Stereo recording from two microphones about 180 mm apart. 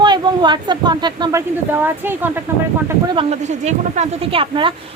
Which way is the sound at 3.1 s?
40° right (ahead or behind).